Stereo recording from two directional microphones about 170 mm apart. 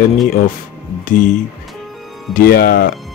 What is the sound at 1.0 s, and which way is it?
Speech, 50° left (ahead or behind).